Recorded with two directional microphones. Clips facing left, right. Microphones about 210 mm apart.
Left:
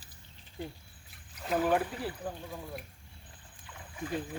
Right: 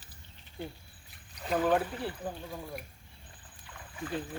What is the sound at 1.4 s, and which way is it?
Speech, 5° left (ahead or behind).